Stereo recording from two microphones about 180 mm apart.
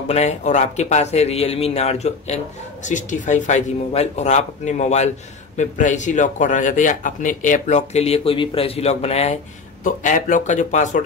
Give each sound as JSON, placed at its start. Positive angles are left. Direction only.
{"t": 0.1, "sound": "speech", "side_deg": 40}
{"t": 9.8, "sound": "speech", "side_deg": 45}